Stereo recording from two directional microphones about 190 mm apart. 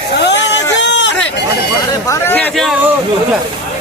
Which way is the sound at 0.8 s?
70° left (ahead or behind).